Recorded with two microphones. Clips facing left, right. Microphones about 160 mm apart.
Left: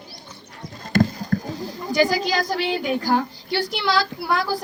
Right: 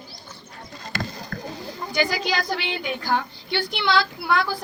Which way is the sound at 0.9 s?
45° left (ahead or behind).